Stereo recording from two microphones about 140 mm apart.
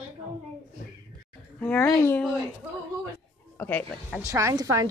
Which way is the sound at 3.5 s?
10° left (ahead or behind).